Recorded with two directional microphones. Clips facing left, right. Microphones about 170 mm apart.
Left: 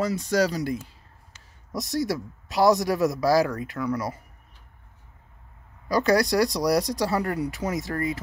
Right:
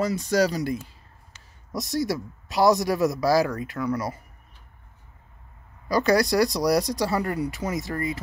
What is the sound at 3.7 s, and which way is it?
Speech, 30° right (ahead or behind).